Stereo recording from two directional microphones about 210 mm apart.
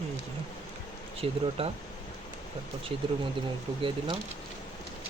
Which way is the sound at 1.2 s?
25° right (ahead or behind).